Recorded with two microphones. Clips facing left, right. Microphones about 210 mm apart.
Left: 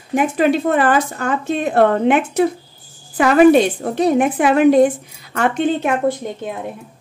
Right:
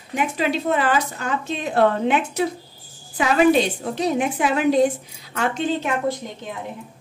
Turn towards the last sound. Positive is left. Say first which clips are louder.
# left 5 dB
turn(degrees=55)  # may be behind; listen again after turning